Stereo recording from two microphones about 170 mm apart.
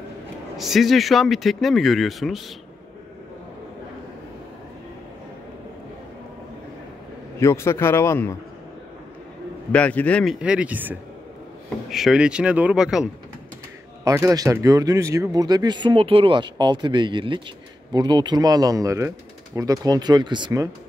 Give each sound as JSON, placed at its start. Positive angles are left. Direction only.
{"t": 0.6, "sound": "speech", "side_deg": 0}
{"t": 7.3, "sound": "a man's voice", "side_deg": 15}
{"t": 9.7, "sound": "a man's voice", "side_deg": 10}
{"t": 10.4, "sound": "speech", "side_deg": -5}
{"t": 14.0, "sound": "speech", "side_deg": -20}